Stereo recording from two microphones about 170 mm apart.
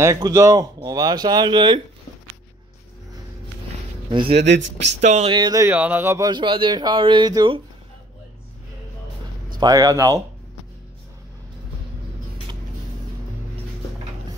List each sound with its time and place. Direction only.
0.0 s speech: 20° right (ahead or behind)
4.3 s speech: 85° right
5.0 s speech: 40° right (ahead or behind)
5.3 s speech: 25° right (ahead or behind)
9.6 s speech: 20° right (ahead or behind)